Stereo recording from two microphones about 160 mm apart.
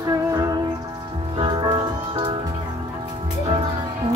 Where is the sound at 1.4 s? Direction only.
30° right (ahead or behind).